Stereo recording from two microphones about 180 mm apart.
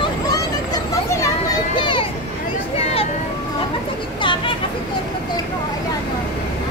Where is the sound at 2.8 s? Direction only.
35° left (ahead or behind).